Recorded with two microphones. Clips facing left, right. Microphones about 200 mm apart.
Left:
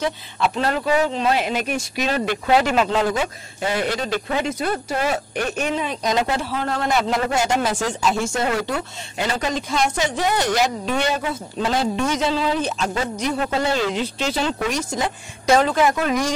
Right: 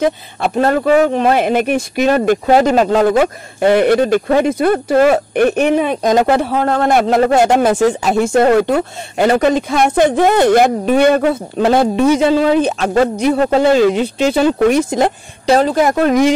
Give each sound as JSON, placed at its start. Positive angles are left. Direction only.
{"t": 0.0, "sound": "speech", "side_deg": -50}
{"t": 15.4, "sound": "speech", "side_deg": -35}